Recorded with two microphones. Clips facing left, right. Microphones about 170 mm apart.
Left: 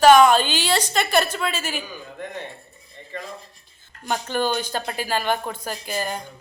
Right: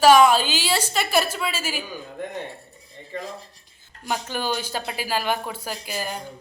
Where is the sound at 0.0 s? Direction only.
5° right (ahead or behind).